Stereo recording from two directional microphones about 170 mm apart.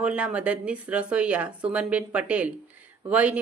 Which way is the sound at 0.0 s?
5° right (ahead or behind).